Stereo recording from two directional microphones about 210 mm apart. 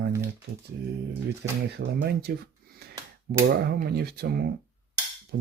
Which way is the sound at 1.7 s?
50° right (ahead or behind).